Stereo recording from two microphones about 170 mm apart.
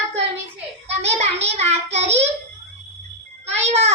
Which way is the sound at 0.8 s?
40° right (ahead or behind).